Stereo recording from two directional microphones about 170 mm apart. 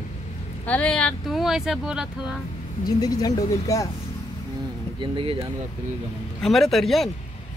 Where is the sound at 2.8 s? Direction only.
25° left (ahead or behind).